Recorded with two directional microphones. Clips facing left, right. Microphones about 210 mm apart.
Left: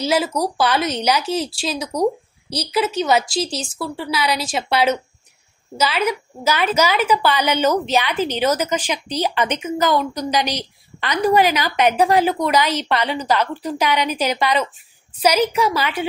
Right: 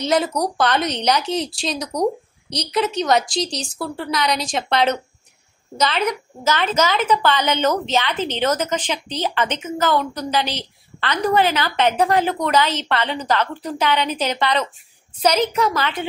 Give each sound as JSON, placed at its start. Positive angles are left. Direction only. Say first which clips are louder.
{"t": 0.0, "sound": "a woman's voice", "louder": "even", "side_deg": 5}